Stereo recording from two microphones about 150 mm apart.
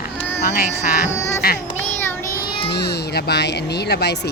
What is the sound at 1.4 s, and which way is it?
Speech, 90° left.